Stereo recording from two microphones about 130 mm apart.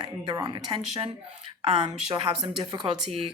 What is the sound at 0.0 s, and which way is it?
Speech, 30° right (ahead or behind).